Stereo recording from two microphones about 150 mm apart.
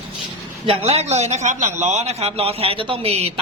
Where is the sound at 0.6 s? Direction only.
40° right (ahead or behind).